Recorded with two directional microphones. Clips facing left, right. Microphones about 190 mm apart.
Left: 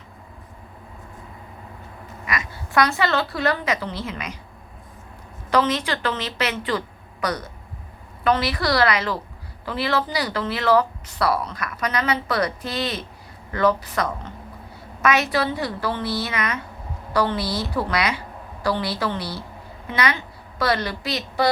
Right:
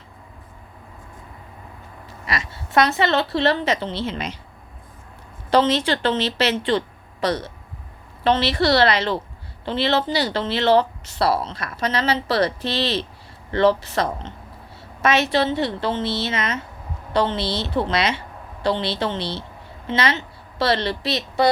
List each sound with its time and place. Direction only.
2.0 s a woman's voice: 30° right (ahead or behind)
5.5 s a woman's voice: 30° right (ahead or behind)